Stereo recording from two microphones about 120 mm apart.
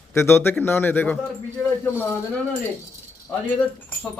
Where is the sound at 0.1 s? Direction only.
20° left (ahead or behind).